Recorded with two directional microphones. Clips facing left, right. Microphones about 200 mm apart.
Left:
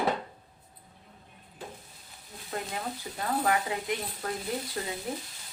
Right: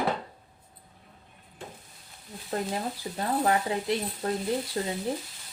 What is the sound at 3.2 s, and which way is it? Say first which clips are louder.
Speech: right 2 dB; 30° right (ahead or behind).